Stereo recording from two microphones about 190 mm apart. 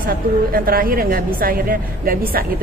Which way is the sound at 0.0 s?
50° right (ahead or behind).